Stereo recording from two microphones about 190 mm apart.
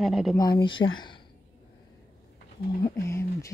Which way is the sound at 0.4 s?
25° left (ahead or behind).